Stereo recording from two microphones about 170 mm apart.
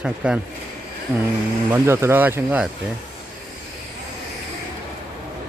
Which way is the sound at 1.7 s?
15° right (ahead or behind).